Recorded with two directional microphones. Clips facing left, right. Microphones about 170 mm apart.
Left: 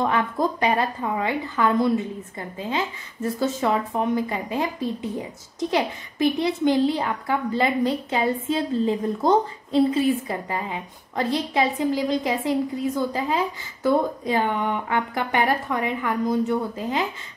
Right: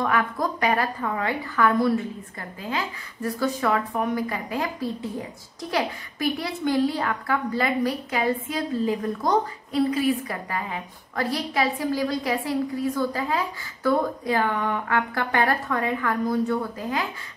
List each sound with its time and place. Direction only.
0.0 s a woman's voice: 25° left (ahead or behind)